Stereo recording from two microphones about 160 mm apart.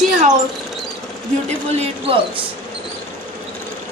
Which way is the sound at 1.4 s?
40° right (ahead or behind).